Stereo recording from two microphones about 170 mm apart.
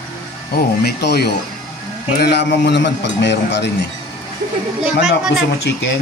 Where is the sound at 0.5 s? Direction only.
70° left (ahead or behind).